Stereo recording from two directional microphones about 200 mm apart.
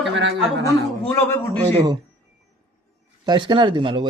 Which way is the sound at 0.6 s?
15° left (ahead or behind).